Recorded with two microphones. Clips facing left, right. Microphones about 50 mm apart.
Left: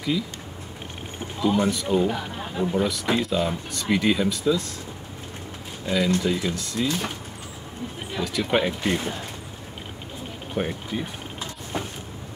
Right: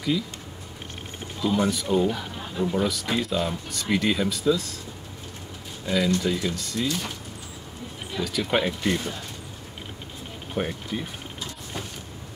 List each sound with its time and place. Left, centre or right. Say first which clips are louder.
1.4 s speech: left 2 dB; centre
2.0 s speech: left 1 dB; left
2.8 s speech: left 2 dB; centre
5.9 s speech: left 1 dB; centre
8.2 s speech: left 1 dB; centre
10.5 s speech: left 1 dB; centre